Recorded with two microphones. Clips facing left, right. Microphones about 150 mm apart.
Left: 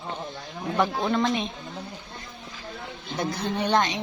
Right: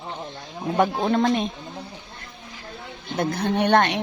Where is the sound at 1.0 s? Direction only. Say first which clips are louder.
Right 4 dB; 45° right (ahead or behind).